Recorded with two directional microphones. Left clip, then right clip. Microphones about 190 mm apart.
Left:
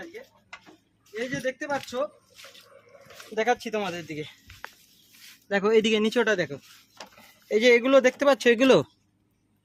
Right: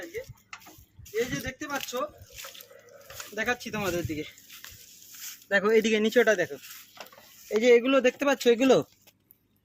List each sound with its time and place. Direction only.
1.1 s speech: 15° left (ahead or behind)
2.4 s drip: 60° right (ahead or behind)
3.3 s speech: 35° left (ahead or behind)
5.5 s speech: 20° left (ahead or behind); by 6.5 s 35° left (ahead or behind)
7.6 s speech: 40° left (ahead or behind)